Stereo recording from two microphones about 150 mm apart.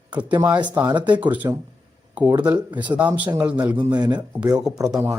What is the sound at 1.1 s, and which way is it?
Speech, 10° right (ahead or behind).